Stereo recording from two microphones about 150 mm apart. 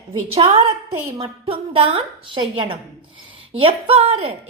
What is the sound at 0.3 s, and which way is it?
A woman's voice, 40° right (ahead or behind).